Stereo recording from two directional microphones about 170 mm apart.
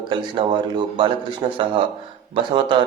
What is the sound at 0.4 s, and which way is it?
A man's voice, 25° right (ahead or behind).